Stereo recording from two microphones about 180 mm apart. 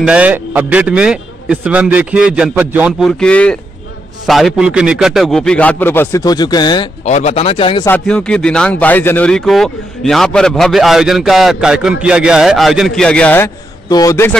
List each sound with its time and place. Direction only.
0.0 s a man's voice: 5° right (ahead or behind)
3.2 s speech: 5° left (ahead or behind); by 6.9 s 25° left (ahead or behind)
7.1 s speech: 40° left (ahead or behind)
7.8 s speech: 10° left (ahead or behind)